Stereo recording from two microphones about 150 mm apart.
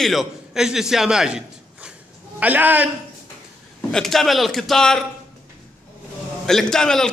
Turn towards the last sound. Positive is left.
turn(degrees=5)  # may be behind; listen again after turning